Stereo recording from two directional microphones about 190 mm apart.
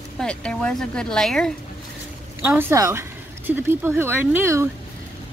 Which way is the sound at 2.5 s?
10° right (ahead or behind).